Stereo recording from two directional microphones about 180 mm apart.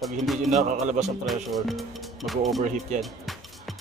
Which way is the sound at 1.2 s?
Centre (ahead or behind).